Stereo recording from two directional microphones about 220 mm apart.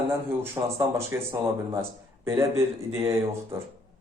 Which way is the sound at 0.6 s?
15° right (ahead or behind).